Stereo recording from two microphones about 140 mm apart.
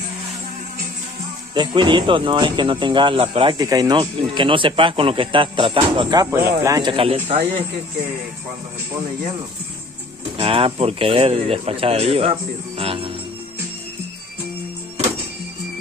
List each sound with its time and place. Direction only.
1.5 s speech: 35° right (ahead or behind)
3.6 s speech: 25° right (ahead or behind)
6.3 s speech: 20° right (ahead or behind)
6.8 s speech: 40° right (ahead or behind)
10.3 s speech: 40° right (ahead or behind)
12.7 s music: 40° right (ahead or behind)